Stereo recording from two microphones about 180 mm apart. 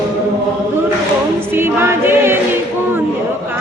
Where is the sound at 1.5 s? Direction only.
10° right (ahead or behind).